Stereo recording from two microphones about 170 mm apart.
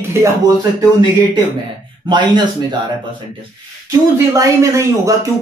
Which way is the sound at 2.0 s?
25° right (ahead or behind).